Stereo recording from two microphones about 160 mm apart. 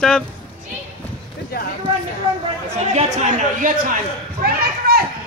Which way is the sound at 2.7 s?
45° right (ahead or behind).